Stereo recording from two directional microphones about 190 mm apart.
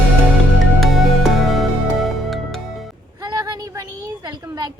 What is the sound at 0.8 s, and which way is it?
Music, centre (ahead or behind).